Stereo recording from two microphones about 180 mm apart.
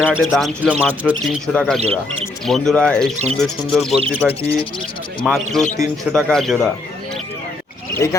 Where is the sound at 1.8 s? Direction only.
35° right (ahead or behind).